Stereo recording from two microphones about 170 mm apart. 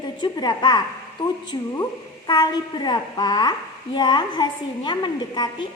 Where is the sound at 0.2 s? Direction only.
25° left (ahead or behind).